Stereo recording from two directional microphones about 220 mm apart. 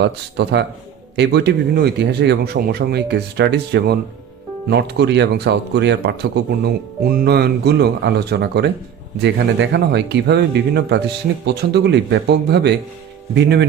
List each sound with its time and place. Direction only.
0.0 s speech: 50° right (ahead or behind)